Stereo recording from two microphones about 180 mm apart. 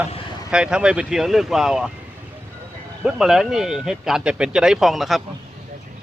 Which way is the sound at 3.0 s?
Centre (ahead or behind).